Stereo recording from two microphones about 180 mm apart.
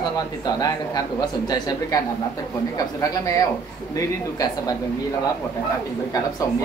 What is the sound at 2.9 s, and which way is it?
A man's voice, 15° left (ahead or behind).